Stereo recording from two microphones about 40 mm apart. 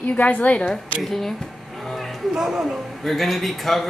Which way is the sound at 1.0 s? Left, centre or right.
Centre.